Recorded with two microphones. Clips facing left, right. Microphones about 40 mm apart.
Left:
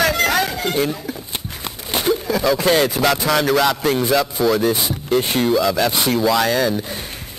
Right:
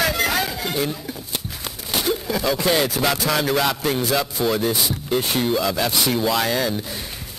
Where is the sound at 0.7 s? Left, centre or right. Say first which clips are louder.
Left 4 dB; centre.